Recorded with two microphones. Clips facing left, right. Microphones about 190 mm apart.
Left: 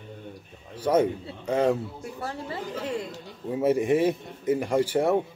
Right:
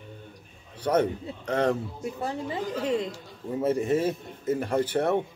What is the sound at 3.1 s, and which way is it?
A man's voice, 15° left (ahead or behind).